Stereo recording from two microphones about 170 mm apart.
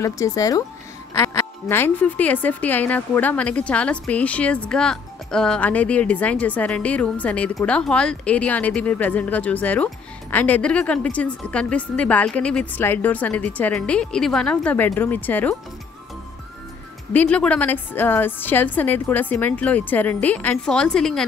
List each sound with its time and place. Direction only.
0.0 s a woman's voice: 20° left (ahead or behind)
17.1 s a woman's voice: 10° left (ahead or behind)